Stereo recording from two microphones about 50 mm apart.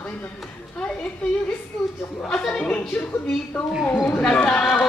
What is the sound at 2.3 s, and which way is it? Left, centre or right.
Speech, centre.